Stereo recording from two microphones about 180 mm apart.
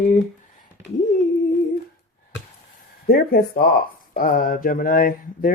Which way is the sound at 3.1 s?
55° left (ahead or behind).